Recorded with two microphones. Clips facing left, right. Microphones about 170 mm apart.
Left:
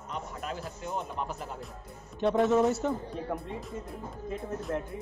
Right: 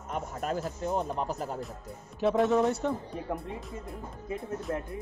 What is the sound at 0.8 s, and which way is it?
Speech, 35° right (ahead or behind).